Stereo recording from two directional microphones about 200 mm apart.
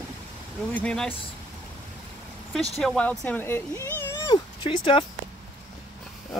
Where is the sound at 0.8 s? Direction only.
5° left (ahead or behind).